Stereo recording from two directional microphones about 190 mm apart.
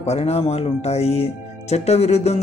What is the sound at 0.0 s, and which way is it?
Speech, 35° left (ahead or behind).